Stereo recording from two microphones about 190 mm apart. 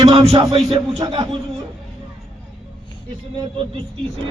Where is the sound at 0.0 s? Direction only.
30° right (ahead or behind).